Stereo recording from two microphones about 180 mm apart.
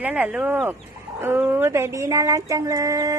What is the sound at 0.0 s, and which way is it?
Speech, 10° right (ahead or behind).